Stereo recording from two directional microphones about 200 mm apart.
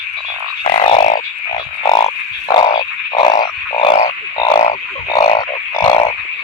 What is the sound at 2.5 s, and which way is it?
Frog, 20° left (ahead or behind).